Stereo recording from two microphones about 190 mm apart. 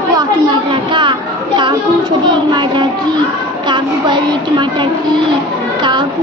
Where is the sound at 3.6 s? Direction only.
25° right (ahead or behind).